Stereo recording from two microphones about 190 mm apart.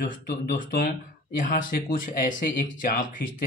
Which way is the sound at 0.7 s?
55° left (ahead or behind).